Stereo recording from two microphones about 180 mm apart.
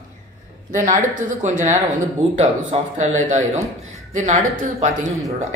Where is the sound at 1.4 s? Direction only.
45° right (ahead or behind).